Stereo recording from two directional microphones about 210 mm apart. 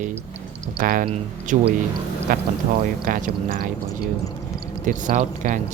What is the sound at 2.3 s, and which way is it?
Speech, 40° right (ahead or behind).